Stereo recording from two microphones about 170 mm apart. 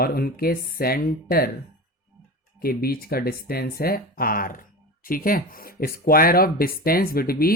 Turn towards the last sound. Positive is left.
turn(degrees=60)  # may be behind; listen again after turning